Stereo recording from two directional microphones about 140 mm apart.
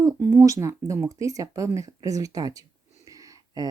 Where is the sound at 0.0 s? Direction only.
20° right (ahead or behind).